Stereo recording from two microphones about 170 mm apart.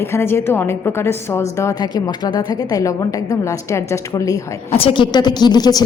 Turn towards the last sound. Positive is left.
turn(degrees=25)  # may be behind; listen again after turning